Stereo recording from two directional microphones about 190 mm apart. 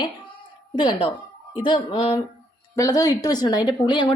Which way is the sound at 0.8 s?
25° left (ahead or behind).